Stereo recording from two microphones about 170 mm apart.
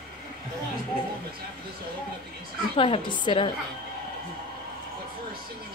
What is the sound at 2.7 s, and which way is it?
Speech, 30° left (ahead or behind).